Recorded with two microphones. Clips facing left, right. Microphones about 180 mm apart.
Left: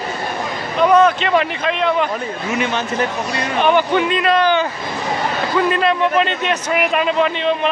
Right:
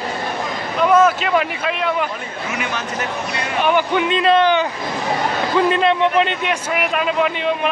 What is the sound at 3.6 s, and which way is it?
Speech, 10° right (ahead or behind).